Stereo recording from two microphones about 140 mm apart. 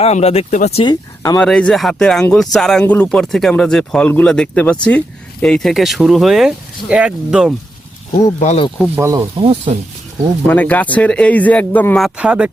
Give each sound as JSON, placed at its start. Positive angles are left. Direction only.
{"t": 0.0, "sound": "speech", "side_deg": 50}
{"t": 0.9, "sound": "speech", "side_deg": 25}
{"t": 1.4, "sound": "speech", "side_deg": 5}
{"t": 8.4, "sound": "speech", "side_deg": 50}
{"t": 9.0, "sound": "speech", "side_deg": -25}
{"t": 10.4, "sound": "speech", "side_deg": 10}
{"t": 11.9, "sound": "speech", "side_deg": -5}